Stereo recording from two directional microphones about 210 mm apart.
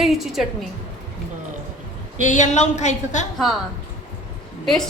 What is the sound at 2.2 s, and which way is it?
Speech, 35° left (ahead or behind).